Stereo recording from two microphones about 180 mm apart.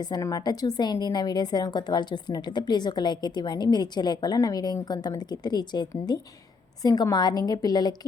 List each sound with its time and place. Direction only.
0.0 s a woman's voice: 20° left (ahead or behind)